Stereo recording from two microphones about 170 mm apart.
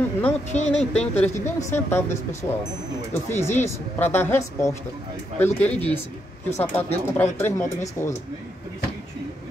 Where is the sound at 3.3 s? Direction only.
15° left (ahead or behind).